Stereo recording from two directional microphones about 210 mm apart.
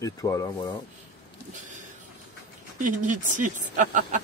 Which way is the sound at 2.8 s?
40° right (ahead or behind).